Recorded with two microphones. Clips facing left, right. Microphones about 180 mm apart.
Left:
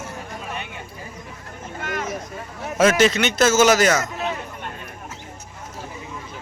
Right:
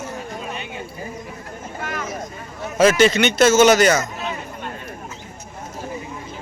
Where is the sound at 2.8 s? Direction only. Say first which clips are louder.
Right 2 dB; centre (ahead or behind).